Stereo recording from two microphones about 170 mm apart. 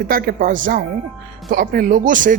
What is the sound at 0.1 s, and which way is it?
Speech, 60° right (ahead or behind).